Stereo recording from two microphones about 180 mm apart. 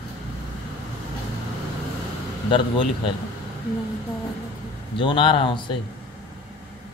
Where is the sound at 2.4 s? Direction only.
25° left (ahead or behind).